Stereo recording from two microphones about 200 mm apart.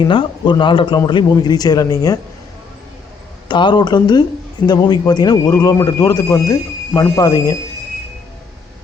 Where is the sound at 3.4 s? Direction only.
25° left (ahead or behind).